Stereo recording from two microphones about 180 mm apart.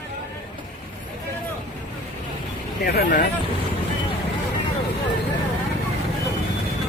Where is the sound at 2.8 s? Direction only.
60° left (ahead or behind).